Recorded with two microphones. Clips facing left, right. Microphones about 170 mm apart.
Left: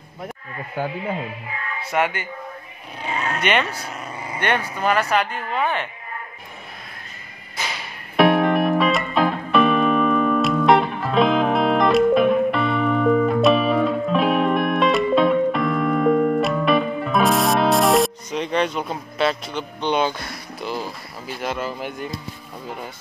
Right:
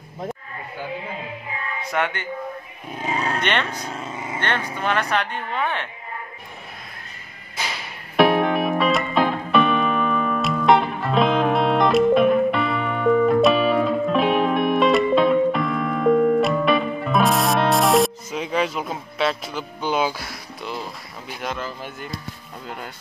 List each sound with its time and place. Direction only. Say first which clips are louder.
1.8 s speech: left 3 dB; 5° left (ahead or behind)
3.1 s speech: right 1 dB; 35° right (ahead or behind)
3.3 s speech: left 2 dB; 10° left (ahead or behind)
3.9 s speech: right 1 dB; 25° right (ahead or behind)
4.4 s speech: left 4 dB; 10° left (ahead or behind)
8.2 s music: left 1 dB; centre (ahead or behind)
21.4 s speech: left 3 dB; 5° left (ahead or behind)